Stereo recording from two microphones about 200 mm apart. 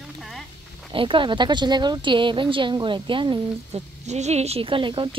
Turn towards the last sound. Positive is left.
turn(degrees=-25)  # may be behind; listen again after turning